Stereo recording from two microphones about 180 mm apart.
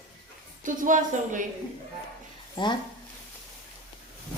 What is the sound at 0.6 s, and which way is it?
Speech, 45° right (ahead or behind).